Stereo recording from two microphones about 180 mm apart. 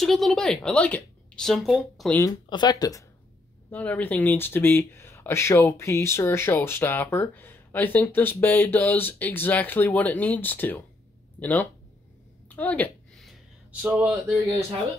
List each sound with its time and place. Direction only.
0.0 s speech: centre (ahead or behind)
2.1 s speech: 20° left (ahead or behind)
3.7 s speech: 10° left (ahead or behind)
12.4 s a sound: 10° left (ahead or behind); by 14.2 s 10° right (ahead or behind)